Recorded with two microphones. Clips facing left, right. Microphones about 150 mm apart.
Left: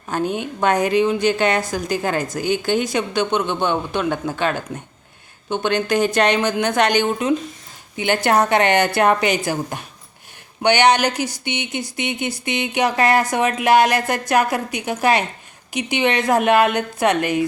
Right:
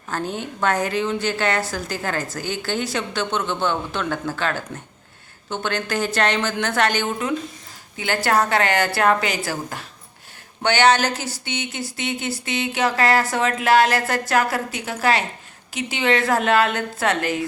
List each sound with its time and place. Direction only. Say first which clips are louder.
0.1 s a woman's voice: left 5 dB; 15° left (ahead or behind)